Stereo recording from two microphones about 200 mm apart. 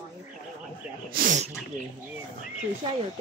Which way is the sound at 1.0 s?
45° right (ahead or behind).